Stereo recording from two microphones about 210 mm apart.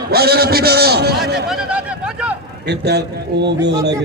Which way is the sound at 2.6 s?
50° right (ahead or behind).